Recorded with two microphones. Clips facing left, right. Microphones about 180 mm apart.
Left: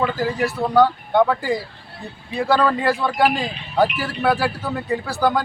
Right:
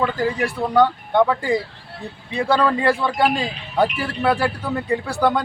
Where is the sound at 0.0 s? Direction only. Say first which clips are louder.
Even; 5° left (ahead or behind).